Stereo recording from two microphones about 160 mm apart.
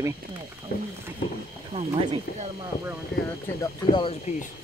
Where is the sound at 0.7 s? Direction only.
70° left (ahead or behind).